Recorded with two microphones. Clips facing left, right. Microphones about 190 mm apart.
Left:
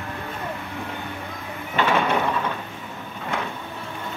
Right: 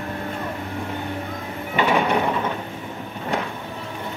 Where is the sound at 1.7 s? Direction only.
15° right (ahead or behind).